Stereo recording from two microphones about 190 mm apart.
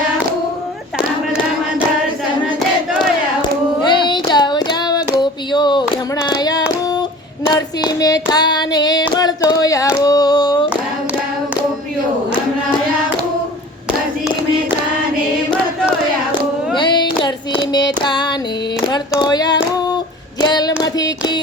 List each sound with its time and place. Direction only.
3.4 s child singing: 25° left (ahead or behind)
6.2 s hands: 20° left (ahead or behind)
7.9 s singing: 20° left (ahead or behind)
10.0 s a sound: 20° left (ahead or behind)
16.7 s child singing: 25° left (ahead or behind)
19.2 s singing: 20° left (ahead or behind)
20.4 s child singing: 20° left (ahead or behind)